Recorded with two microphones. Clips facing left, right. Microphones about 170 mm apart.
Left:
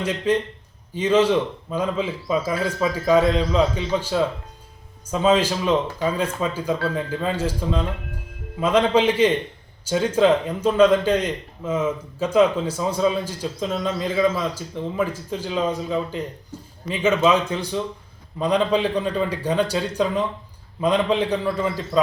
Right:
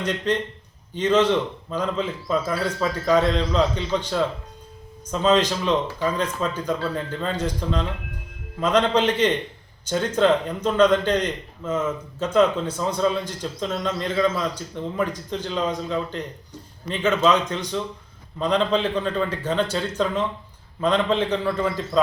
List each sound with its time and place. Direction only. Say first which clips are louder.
0.0 s a man's voice: left 2 dB; 10° left (ahead or behind)
20.8 s a man's voice: left 1 dB; 10° left (ahead or behind)